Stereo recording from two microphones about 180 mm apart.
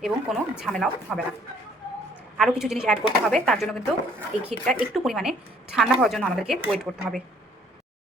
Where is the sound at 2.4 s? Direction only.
5° right (ahead or behind).